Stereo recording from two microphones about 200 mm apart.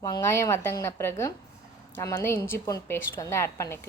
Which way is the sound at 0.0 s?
15° left (ahead or behind).